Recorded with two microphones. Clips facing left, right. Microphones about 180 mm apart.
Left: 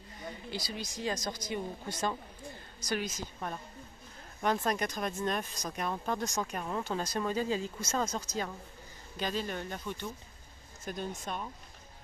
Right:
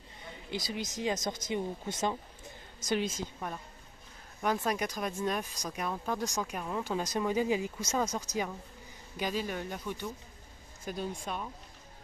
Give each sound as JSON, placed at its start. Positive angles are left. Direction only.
{"t": 0.5, "sound": "speech", "side_deg": -20}
{"t": 3.3, "sound": "speech", "side_deg": -5}